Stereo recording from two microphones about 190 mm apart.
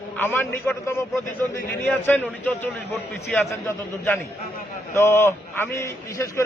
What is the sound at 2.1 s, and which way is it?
A man's voice, 10° left (ahead or behind).